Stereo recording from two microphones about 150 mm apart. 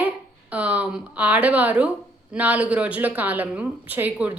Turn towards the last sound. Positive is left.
turn(degrees=-10)  # may be behind; listen again after turning